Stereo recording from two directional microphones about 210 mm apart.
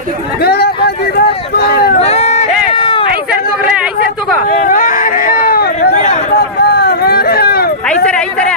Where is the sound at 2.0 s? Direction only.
30° left (ahead or behind).